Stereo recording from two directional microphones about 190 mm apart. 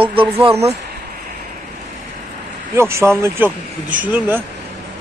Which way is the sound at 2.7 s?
15° right (ahead or behind).